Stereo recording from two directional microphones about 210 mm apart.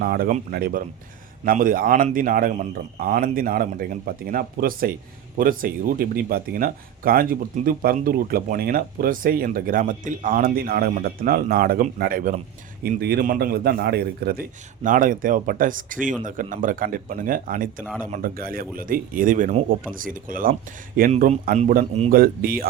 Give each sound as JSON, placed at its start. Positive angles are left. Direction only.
{"t": 0.0, "sound": "speech", "side_deg": -45}